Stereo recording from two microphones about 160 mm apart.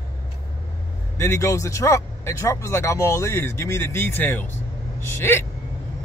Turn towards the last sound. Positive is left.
turn(degrees=15)  # may be behind; listen again after turning